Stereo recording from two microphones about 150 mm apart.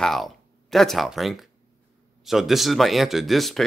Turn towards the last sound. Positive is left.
turn(degrees=0)  # may be behind; listen again after turning